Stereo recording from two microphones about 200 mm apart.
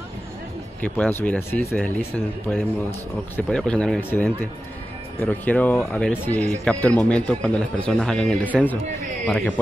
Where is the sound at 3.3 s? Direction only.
5° left (ahead or behind).